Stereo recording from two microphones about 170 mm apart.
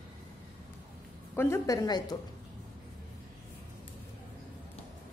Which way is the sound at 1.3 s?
15° left (ahead or behind).